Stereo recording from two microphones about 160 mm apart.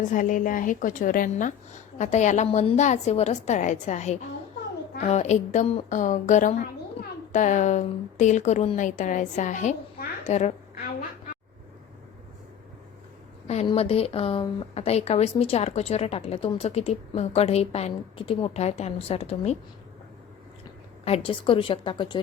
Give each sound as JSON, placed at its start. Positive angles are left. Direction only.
{"t": 0.0, "sound": "a woman's voice", "side_deg": 55}
{"t": 5.9, "sound": "a woman's voice", "side_deg": 50}
{"t": 13.7, "sound": "a woman's voice", "side_deg": 40}
{"t": 21.0, "sound": "a woman's voice", "side_deg": 35}